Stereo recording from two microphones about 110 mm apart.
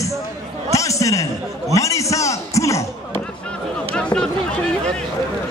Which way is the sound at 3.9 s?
10° left (ahead or behind).